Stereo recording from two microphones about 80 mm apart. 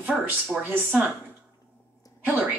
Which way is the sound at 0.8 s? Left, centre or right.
Right.